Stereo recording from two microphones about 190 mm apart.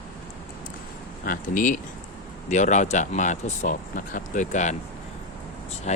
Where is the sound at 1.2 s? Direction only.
45° left (ahead or behind).